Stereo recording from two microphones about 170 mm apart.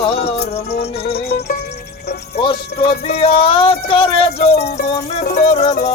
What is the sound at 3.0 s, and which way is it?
Speech, 35° left (ahead or behind).